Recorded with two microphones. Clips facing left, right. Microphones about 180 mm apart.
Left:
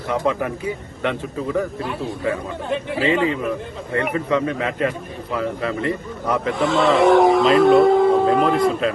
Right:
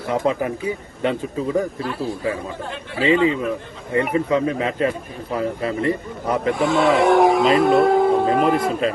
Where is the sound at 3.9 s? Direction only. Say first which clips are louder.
Right 2 dB; 30° right (ahead or behind).